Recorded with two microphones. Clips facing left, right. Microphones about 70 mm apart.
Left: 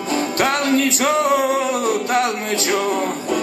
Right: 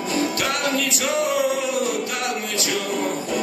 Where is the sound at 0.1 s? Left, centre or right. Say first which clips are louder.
Left 5 dB; left.